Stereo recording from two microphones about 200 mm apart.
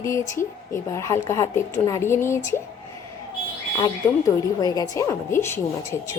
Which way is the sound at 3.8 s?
20° left (ahead or behind).